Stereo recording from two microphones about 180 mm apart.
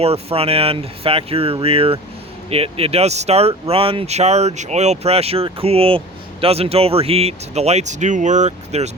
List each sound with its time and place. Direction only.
0.0 s speech: 35° right (ahead or behind)